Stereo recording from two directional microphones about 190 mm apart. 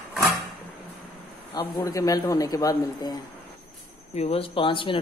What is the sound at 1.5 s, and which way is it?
A man's voice, 10° left (ahead or behind).